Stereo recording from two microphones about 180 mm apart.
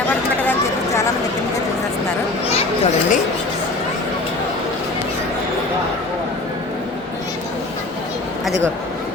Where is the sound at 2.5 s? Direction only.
35° left (ahead or behind).